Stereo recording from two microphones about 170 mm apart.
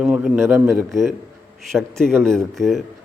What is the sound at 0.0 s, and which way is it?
A man's voice, 5° right (ahead or behind).